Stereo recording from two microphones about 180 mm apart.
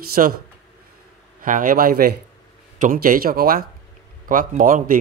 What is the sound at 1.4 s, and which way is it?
Speech, 50° right (ahead or behind).